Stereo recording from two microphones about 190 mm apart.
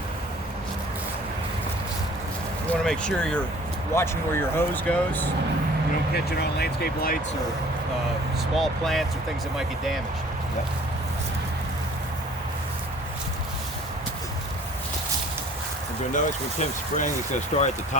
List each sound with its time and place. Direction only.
2.6 s speech: 5° left (ahead or behind)
6.1 s speech: 55° left (ahead or behind)
8.5 s speech: centre (ahead or behind)
16.1 s speech: 40° left (ahead or behind)